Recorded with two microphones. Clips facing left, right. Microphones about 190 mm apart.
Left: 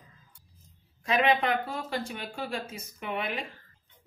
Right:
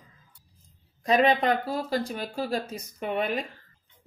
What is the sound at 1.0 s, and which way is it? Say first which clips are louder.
Speech: right 4 dB; 40° right (ahead or behind).